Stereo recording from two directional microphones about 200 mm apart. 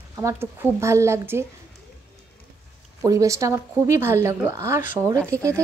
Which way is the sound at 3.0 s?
15° right (ahead or behind).